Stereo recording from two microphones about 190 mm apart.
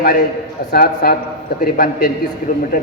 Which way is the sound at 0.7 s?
55° left (ahead or behind).